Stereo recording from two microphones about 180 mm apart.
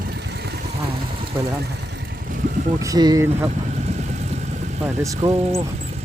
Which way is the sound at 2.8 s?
20° right (ahead or behind).